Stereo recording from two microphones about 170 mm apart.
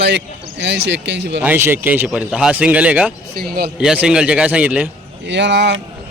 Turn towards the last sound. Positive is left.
turn(degrees=-90)